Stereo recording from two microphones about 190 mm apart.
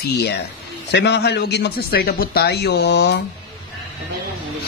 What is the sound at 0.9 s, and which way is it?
Speech, 60° left (ahead or behind).